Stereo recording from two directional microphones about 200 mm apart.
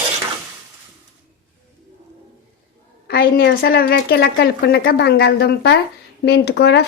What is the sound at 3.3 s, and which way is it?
Speech, 65° left (ahead or behind).